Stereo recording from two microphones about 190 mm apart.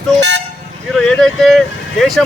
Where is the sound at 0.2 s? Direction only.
70° right (ahead or behind).